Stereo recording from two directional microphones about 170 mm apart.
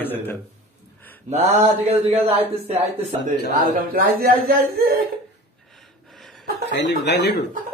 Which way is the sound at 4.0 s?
60° right (ahead or behind).